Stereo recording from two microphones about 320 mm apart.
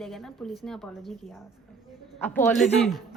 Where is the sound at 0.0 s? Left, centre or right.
Centre.